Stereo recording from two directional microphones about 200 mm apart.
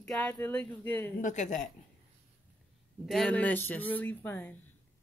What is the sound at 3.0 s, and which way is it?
Speech, 5° left (ahead or behind).